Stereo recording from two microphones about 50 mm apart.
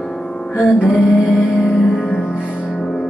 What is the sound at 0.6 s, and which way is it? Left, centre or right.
Music, centre.